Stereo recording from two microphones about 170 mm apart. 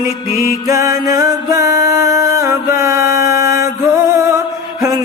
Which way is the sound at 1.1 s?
20° right (ahead or behind).